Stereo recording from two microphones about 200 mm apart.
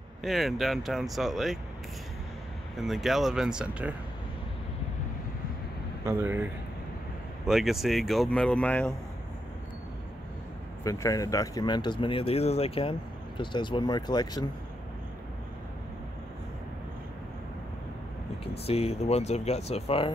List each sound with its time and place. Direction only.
0.2 s speech: centre (ahead or behind)
2.7 s speech: centre (ahead or behind)
6.0 s speech: 10° right (ahead or behind); by 8.9 s 5° left (ahead or behind)
10.8 s speech: 15° left (ahead or behind)
18.7 s speech: 30° left (ahead or behind)